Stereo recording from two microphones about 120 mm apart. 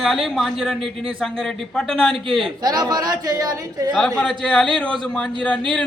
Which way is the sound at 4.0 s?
Centre (ahead or behind).